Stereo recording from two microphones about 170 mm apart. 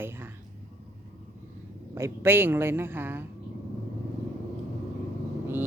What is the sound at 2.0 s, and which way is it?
Speech, 15° right (ahead or behind).